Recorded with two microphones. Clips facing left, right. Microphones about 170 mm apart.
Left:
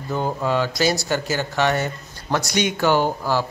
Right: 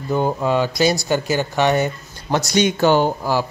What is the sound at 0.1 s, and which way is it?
Speech, 15° right (ahead or behind).